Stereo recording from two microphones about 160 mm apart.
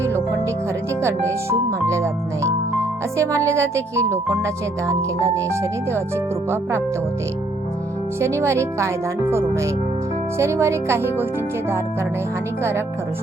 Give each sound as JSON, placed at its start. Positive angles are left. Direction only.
{"t": 1.0, "sound": "speech", "side_deg": -15}
{"t": 6.5, "sound": "speech", "side_deg": -15}
{"t": 8.2, "sound": "speech", "side_deg": -15}
{"t": 10.3, "sound": "speech", "side_deg": -15}